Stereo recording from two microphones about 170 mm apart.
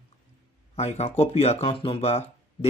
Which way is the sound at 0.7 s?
40° left (ahead or behind).